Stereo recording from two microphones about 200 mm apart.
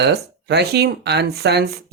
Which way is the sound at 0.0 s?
55° right (ahead or behind).